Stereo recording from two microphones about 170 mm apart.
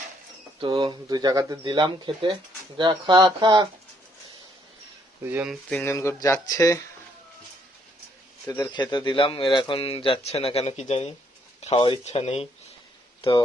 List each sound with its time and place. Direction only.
0.6 s speech: 30° right (ahead or behind)
5.2 s speech: 10° right (ahead or behind)
5.6 s speech: 10° left (ahead or behind)
8.4 s a man's voice: 20° left (ahead or behind); by 12.5 s 35° left (ahead or behind)